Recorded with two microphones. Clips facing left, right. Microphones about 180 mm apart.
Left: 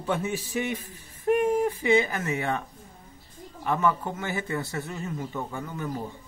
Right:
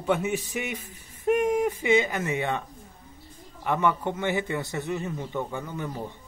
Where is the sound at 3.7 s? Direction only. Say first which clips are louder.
Right 1 dB; 20° right (ahead or behind).